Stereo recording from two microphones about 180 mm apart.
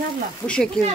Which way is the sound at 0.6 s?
Centre (ahead or behind).